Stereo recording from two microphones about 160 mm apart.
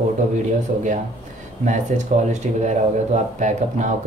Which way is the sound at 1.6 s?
50° right (ahead or behind).